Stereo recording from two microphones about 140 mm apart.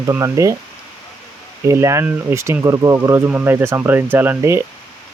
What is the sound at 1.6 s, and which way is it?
Speech, 20° right (ahead or behind).